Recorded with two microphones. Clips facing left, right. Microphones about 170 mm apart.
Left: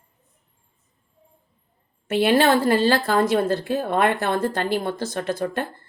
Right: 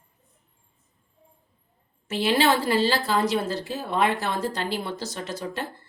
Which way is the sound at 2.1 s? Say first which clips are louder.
Left 4 dB; 55° left (ahead or behind).